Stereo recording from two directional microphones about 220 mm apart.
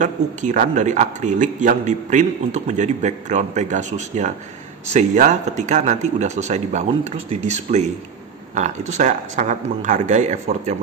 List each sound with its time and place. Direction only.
0.0 s speech: 35° right (ahead or behind)